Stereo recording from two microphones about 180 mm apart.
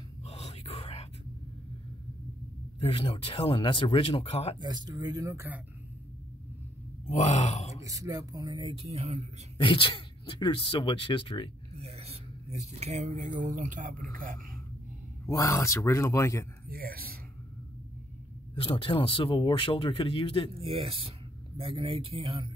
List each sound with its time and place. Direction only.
0.2 s whispering: 35° left (ahead or behind)
2.8 s speech: 30° left (ahead or behind)
4.6 s speech: 25° right (ahead or behind)
7.1 s speech: 40° left (ahead or behind)
7.8 s speech: 20° right (ahead or behind); by 9.2 s 35° right (ahead or behind)
9.6 s speech: 25° left (ahead or behind)
11.8 s speech: 35° right (ahead or behind)
15.2 s speech: 15° left (ahead or behind)
16.6 s speech: 55° right (ahead or behind)
18.5 s speech: 30° left (ahead or behind)
20.5 s speech: 30° right (ahead or behind)